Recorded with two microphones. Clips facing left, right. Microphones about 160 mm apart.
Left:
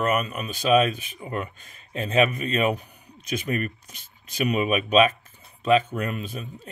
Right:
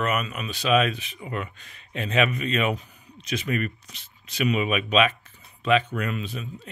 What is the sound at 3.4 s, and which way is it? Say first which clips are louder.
Speech: even; 35° left (ahead or behind).